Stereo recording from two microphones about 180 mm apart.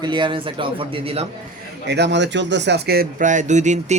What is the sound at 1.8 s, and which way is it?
Speech, 70° right (ahead or behind).